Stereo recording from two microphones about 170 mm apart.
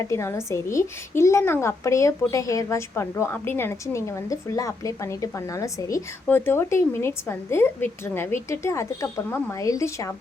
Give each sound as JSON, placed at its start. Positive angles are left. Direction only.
{"t": 0.0, "sound": "a woman's voice", "side_deg": 15}